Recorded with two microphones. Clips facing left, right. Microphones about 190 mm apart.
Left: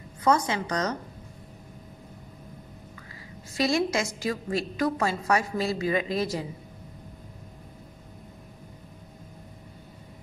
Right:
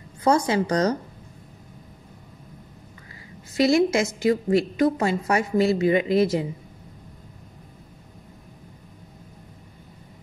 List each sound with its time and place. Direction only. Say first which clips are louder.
0.2 s a woman's voice: right 4 dB; 30° right (ahead or behind)
3.6 s a woman's voice: right 6 dB; 25° right (ahead or behind)